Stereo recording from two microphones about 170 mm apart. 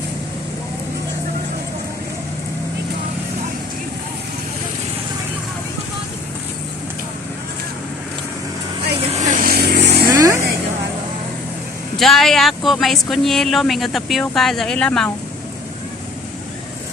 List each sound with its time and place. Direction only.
9.1 s vehicle: 45° right (ahead or behind); by 10.1 s 80° right
10.1 s vehicle: 20° right (ahead or behind)
11.9 s speech: centre (ahead or behind)